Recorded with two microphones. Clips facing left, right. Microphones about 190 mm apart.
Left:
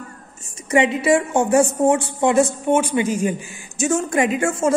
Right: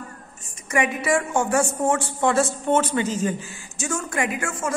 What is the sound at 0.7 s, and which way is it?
A woman's voice, 25° left (ahead or behind).